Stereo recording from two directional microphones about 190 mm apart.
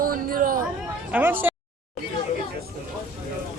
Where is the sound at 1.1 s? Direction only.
10° right (ahead or behind).